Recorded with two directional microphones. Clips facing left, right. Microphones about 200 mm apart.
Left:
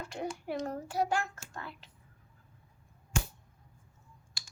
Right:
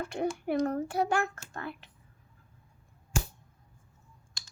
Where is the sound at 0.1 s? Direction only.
60° right (ahead or behind).